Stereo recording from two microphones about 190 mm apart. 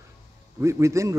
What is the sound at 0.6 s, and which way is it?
Speech, 15° right (ahead or behind).